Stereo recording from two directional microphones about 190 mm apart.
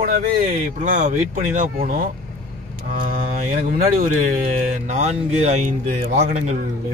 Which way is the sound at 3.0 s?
50° right (ahead or behind).